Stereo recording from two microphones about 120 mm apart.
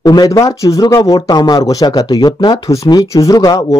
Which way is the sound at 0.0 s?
35° left (ahead or behind).